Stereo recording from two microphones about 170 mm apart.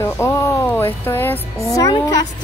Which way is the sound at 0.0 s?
15° left (ahead or behind).